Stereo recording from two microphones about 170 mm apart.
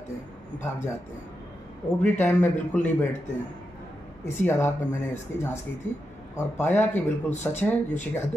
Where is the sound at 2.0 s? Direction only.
10° left (ahead or behind).